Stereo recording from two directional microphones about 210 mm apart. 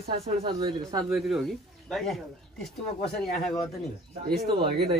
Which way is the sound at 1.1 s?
Centre (ahead or behind).